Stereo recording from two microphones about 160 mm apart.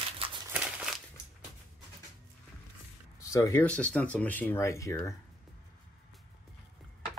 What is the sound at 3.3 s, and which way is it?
Speech, 20° left (ahead or behind).